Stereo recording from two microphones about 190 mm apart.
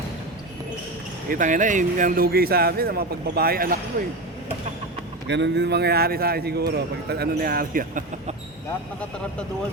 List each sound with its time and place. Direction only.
1.3 s speech: 45° right (ahead or behind)
5.3 s a man's voice: 65° right (ahead or behind); by 8.4 s 45° right (ahead or behind)